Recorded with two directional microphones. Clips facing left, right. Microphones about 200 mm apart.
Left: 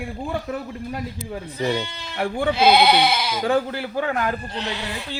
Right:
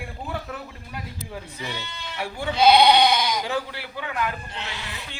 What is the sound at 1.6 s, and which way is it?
Speech, 50° left (ahead or behind).